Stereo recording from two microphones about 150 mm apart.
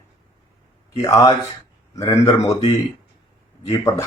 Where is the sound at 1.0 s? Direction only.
20° left (ahead or behind).